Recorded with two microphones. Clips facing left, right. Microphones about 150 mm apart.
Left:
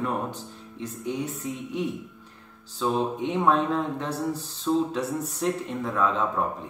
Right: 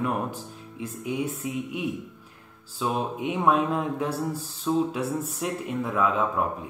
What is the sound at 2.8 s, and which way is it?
Speech, 5° right (ahead or behind).